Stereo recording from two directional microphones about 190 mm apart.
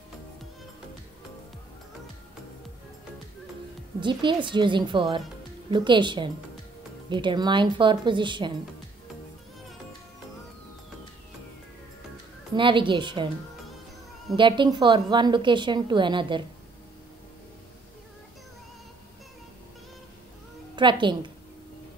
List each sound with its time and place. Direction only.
4.0 s a woman's voice: 25° right (ahead or behind)
12.5 s a woman's voice: 25° right (ahead or behind)
14.3 s a woman's voice: 25° right (ahead or behind)
20.7 s a woman's voice: 25° right (ahead or behind)